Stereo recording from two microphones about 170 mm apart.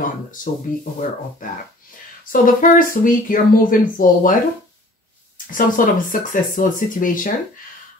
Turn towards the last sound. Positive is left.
turn(degrees=55)  # may be behind; listen again after turning